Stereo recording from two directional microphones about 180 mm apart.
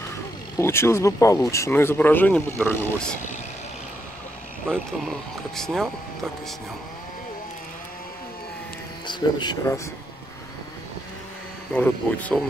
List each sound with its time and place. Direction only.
0.6 s speech: 15° left (ahead or behind)
5.6 s speech: centre (ahead or behind)
9.0 s speech: 25° left (ahead or behind)
11.7 s speech: 10° left (ahead or behind)